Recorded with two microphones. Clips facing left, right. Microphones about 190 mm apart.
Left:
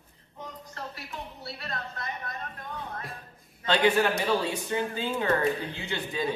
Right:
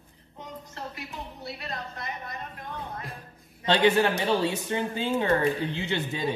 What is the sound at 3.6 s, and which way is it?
Speech, 25° right (ahead or behind).